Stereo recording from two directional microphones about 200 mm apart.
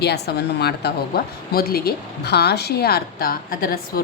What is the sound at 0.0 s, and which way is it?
A woman's voice, 55° left (ahead or behind).